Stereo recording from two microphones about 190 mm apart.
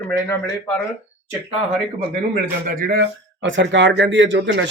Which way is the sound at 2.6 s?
55° right (ahead or behind).